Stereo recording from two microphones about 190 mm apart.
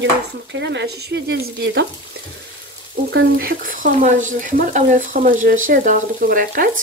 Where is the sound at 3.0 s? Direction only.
60° right (ahead or behind).